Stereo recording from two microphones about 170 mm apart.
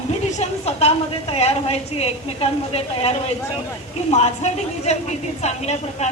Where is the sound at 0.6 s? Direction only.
35° left (ahead or behind).